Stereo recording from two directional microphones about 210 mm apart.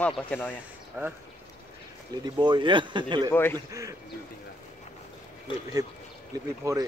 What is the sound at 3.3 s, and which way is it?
Speech, 10° left (ahead or behind).